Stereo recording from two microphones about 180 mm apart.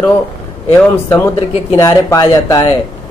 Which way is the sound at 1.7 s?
20° left (ahead or behind).